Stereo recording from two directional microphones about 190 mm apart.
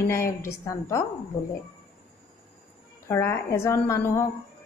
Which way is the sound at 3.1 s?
15° left (ahead or behind).